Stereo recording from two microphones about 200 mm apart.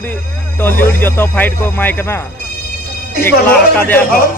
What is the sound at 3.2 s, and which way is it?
Speech, 10° left (ahead or behind).